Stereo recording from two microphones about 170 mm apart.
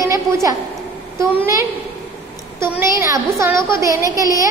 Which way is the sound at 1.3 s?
15° right (ahead or behind).